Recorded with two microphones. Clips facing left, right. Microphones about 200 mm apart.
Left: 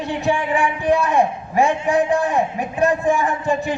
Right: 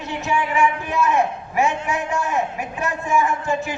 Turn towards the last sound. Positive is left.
turn(degrees=35)  # may be behind; listen again after turning